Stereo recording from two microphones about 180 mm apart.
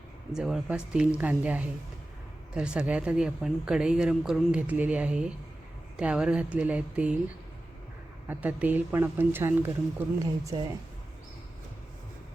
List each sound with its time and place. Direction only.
0.3 s a woman's voice: 5° right (ahead or behind)
8.3 s speech: 10° right (ahead or behind)
10.4 s speech: 25° right (ahead or behind)